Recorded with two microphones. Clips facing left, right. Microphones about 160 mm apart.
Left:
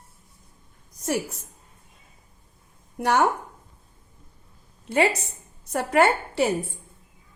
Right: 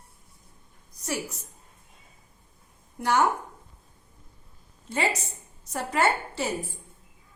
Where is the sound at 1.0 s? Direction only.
55° left (ahead or behind).